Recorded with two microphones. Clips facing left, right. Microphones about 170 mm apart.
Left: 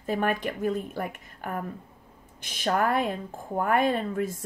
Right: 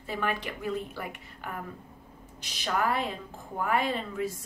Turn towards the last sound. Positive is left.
turn(degrees=50)  # may be behind; listen again after turning